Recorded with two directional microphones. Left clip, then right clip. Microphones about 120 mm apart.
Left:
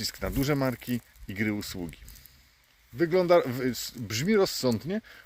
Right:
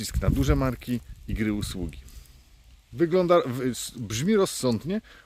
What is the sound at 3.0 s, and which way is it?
Speech, 35° right (ahead or behind).